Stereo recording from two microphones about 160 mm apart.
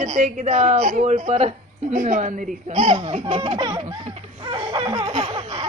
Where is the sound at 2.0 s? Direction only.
55° right (ahead or behind).